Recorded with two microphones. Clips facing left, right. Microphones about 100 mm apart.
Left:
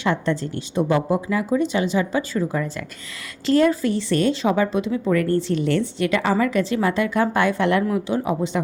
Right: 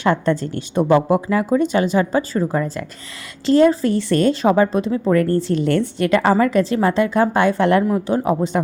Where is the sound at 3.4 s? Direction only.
30° right (ahead or behind).